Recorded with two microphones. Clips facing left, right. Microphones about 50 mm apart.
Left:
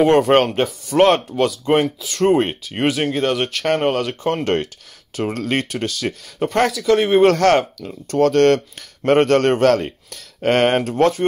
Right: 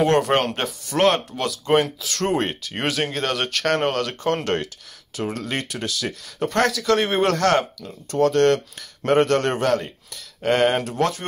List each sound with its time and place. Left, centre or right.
0.0 s speech: left
1.7 s speech: centre
5.1 s speech: left
6.7 s speech: centre
7.2 s speech: left
8.1 s speech: left